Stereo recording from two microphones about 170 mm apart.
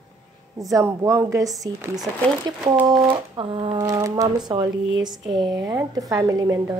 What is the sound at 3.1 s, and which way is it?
Speech, 30° right (ahead or behind).